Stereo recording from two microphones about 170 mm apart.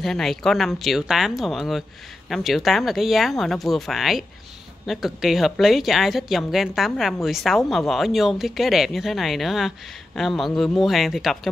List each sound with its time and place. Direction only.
0.0 s a woman's voice: centre (ahead or behind)